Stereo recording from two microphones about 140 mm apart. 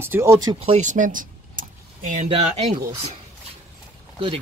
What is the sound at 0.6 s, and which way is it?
Vehicle, 55° right (ahead or behind).